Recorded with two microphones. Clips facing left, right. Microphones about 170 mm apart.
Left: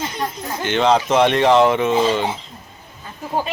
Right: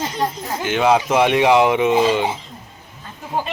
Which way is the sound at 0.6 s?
5° right (ahead or behind).